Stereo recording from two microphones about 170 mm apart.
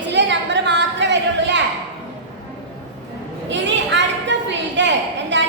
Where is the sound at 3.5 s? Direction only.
90° right.